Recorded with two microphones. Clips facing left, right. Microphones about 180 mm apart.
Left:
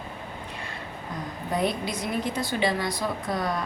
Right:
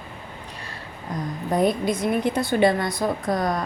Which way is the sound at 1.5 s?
50° right (ahead or behind).